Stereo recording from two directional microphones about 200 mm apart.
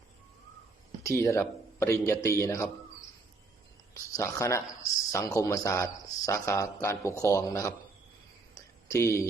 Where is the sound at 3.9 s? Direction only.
15° left (ahead or behind).